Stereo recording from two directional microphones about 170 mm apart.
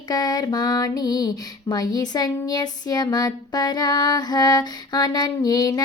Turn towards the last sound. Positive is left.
turn(degrees=20)  # may be behind; listen again after turning